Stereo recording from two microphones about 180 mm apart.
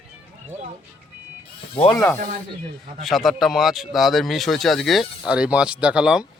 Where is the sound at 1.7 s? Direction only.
30° left (ahead or behind).